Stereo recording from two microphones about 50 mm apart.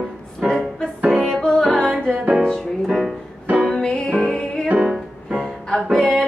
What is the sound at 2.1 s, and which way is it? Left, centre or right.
Music, right.